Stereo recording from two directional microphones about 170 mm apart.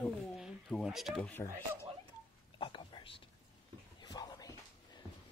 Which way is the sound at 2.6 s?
30° left (ahead or behind).